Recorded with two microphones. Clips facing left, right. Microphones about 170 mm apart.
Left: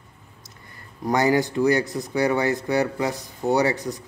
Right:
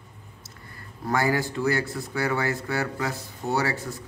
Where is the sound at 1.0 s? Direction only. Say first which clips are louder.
Left 5 dB; 20° left (ahead or behind).